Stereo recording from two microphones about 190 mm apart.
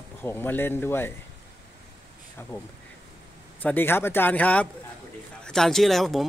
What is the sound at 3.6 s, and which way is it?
A man's voice, 10° left (ahead or behind).